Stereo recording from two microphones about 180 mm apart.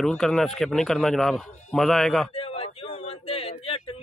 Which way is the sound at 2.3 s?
30° left (ahead or behind).